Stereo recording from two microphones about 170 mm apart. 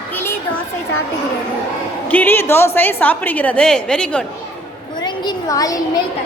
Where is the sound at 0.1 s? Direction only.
10° left (ahead or behind).